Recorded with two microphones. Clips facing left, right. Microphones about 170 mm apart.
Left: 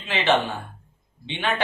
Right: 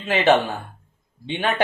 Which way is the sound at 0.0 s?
40° right (ahead or behind).